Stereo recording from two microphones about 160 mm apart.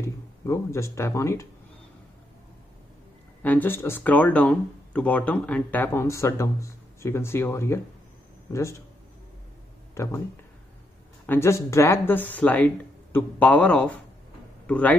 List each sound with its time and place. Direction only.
0.0 s speech: 15° left (ahead or behind)
3.4 s a man's voice: 10° left (ahead or behind)
10.0 s speech: 15° left (ahead or behind)
11.2 s speech: 15° left (ahead or behind)